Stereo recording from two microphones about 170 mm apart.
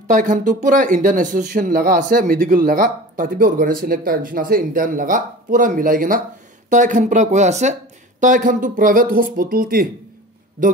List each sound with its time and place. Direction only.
0.1 s speech: 50° right (ahead or behind)